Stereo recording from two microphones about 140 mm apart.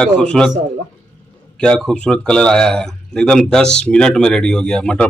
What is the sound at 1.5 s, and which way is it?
Speech, 5° left (ahead or behind).